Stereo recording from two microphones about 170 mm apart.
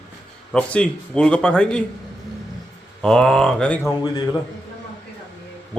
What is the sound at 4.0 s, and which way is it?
Speech, 25° left (ahead or behind).